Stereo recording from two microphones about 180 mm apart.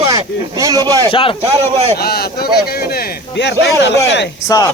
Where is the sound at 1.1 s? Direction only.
30° left (ahead or behind).